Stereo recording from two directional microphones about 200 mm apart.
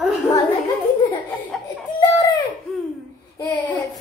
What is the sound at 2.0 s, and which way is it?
Baby laughter, 20° left (ahead or behind).